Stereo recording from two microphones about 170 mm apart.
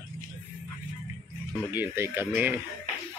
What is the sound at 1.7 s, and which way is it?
Speech, 15° right (ahead or behind).